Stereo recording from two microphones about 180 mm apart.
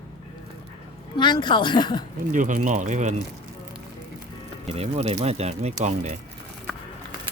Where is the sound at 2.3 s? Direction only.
45° right (ahead or behind).